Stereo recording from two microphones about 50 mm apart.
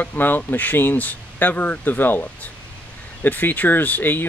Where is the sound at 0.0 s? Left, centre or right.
Left.